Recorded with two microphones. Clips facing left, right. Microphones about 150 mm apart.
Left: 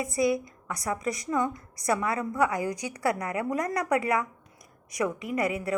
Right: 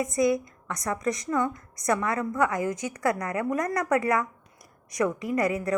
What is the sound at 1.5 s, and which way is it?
Speech, 30° left (ahead or behind).